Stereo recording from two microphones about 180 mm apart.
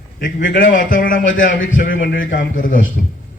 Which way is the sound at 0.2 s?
50° left (ahead or behind).